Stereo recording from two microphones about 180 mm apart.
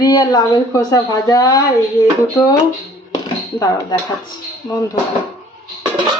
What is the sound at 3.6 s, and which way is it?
Speech, 20° left (ahead or behind).